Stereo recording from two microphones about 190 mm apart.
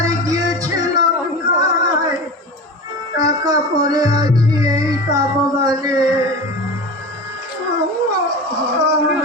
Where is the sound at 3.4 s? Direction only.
20° right (ahead or behind).